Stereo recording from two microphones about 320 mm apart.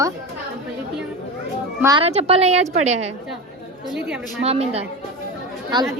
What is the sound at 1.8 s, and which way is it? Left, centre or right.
Speech, centre.